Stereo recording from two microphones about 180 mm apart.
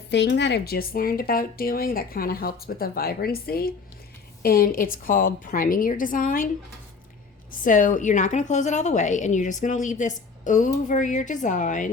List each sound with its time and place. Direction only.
0.1 s a woman's voice: 75° left (ahead or behind); by 6.5 s 50° left (ahead or behind)
7.5 s a woman's voice: 50° left (ahead or behind)